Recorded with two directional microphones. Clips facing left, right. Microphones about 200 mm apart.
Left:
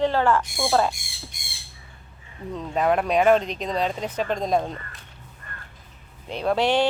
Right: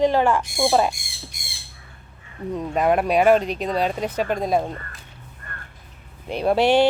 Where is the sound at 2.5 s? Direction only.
10° right (ahead or behind).